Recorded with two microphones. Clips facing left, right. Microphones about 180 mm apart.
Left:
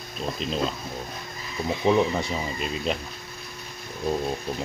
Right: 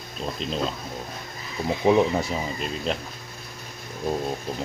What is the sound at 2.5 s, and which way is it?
Speech, centre (ahead or behind).